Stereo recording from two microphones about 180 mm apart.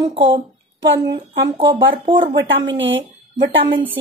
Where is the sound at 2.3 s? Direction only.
90° right.